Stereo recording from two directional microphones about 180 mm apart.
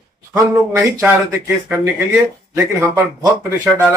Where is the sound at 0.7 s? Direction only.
15° right (ahead or behind).